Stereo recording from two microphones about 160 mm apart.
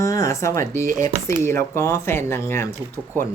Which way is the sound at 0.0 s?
20° left (ahead or behind).